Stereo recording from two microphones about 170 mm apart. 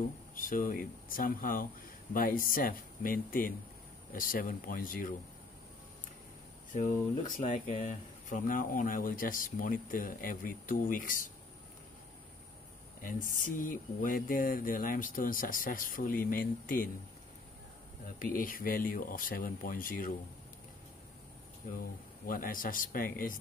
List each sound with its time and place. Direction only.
0.4 s speech: 55° left (ahead or behind)
6.7 s speech: 50° left (ahead or behind)
13.0 s speech: 50° left (ahead or behind)
18.2 s speech: 55° left (ahead or behind)
22.2 s speech: 55° left (ahead or behind)